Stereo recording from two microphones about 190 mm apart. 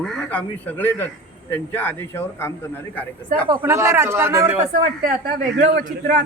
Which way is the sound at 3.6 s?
15° right (ahead or behind).